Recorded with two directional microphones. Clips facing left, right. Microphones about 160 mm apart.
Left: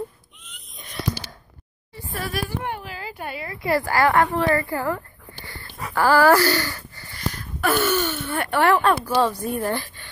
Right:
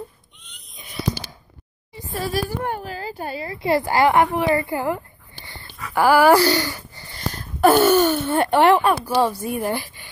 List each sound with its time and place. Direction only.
0.5 s a sound: centre (ahead or behind)
2.1 s a child's voice: 30° right (ahead or behind)
2.5 s a woman's voice: 45° right (ahead or behind)
8.3 s speech: 25° right (ahead or behind)
8.8 s speech: 10° right (ahead or behind)